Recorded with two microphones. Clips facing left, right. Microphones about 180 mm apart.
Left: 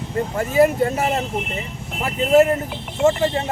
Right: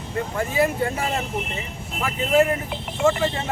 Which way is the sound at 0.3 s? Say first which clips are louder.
Left 6 dB; 40° left (ahead or behind).